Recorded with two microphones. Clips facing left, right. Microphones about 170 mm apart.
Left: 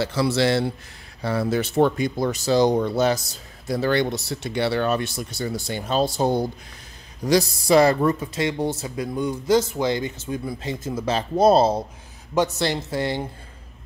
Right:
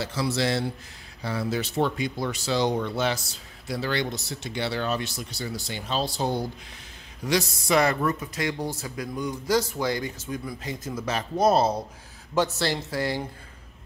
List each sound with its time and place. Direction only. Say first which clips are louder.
0.0 s a man's voice: left 6 dB; 70° left (ahead or behind)
1.2 s speech: left 5 dB; 60° left (ahead or behind)
7.2 s speech: left 6 dB; 35° left (ahead or behind)
12.4 s speech: left 3 dB; 20° left (ahead or behind)